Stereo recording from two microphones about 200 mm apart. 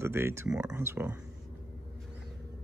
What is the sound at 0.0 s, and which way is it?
Speech, 15° right (ahead or behind).